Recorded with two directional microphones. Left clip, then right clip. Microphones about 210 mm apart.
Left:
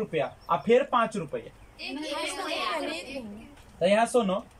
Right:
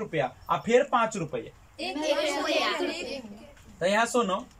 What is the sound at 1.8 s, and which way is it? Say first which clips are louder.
Speech: right 4 dB; 35° right (ahead or behind).